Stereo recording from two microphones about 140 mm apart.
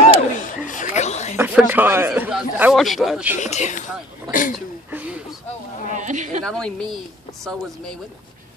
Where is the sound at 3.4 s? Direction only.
60° left (ahead or behind).